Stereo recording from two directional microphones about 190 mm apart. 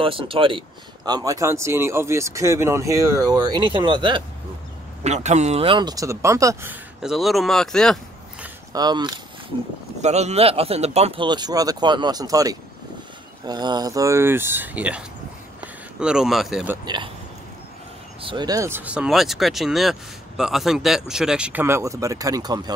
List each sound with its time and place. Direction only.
0.0 s speech: 25° right (ahead or behind)
5.0 s speech: 35° right (ahead or behind); by 8.5 s centre (ahead or behind)
8.7 s speech: 20° right (ahead or behind)
10.0 s speech: 35° right (ahead or behind); by 16.7 s 5° right (ahead or behind)
16.8 s speech: 25° right (ahead or behind)
18.2 s speech: 25° right (ahead or behind)